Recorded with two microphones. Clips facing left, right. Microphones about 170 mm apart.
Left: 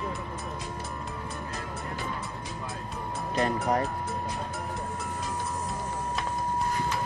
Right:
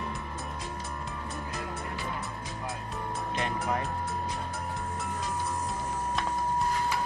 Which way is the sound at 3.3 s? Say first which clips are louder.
Left 6 dB; 40° left (ahead or behind).